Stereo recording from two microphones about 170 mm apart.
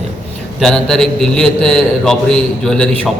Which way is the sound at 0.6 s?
Centre (ahead or behind).